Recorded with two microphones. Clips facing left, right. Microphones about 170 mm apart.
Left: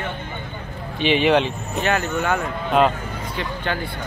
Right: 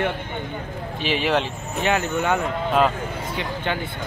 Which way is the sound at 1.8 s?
20° right (ahead or behind).